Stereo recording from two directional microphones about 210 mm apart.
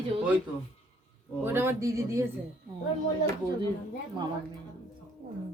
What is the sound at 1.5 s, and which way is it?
Speech, 10° right (ahead or behind).